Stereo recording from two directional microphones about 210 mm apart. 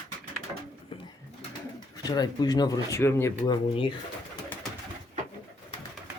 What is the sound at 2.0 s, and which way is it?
Speech, 20° left (ahead or behind).